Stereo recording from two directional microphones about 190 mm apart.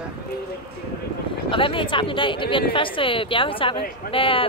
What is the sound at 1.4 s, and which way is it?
A woman's voice, 25° left (ahead or behind).